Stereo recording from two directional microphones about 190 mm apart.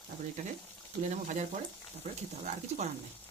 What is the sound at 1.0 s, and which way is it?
Speech, 40° right (ahead or behind).